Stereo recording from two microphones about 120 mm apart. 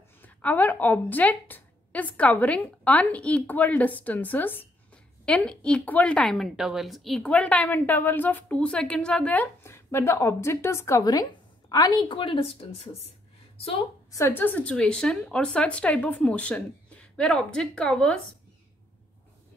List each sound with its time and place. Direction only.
0.2 s a woman's voice: 15° left (ahead or behind); by 13.8 s 55° left (ahead or behind)
14.1 s speech: 20° left (ahead or behind)